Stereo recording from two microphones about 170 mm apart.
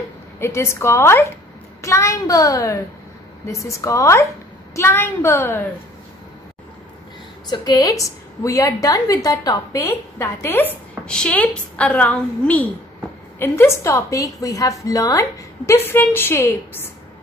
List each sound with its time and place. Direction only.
0.4 s a woman's voice: 15° left (ahead or behind)
7.4 s a woman's voice: 25° left (ahead or behind)